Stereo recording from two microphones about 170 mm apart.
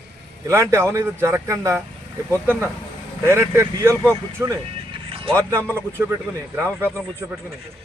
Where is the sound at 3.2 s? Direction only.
15° right (ahead or behind).